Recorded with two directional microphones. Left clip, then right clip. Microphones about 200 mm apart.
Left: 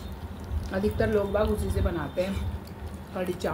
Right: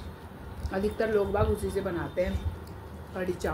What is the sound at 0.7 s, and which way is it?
Speech, 5° right (ahead or behind).